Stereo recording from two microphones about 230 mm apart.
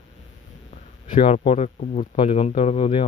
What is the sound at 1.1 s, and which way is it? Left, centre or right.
Speech, left.